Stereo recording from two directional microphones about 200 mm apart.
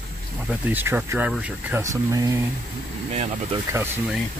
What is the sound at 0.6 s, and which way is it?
Speech, 10° right (ahead or behind).